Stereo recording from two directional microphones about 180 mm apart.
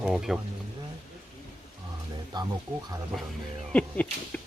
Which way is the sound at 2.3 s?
25° right (ahead or behind).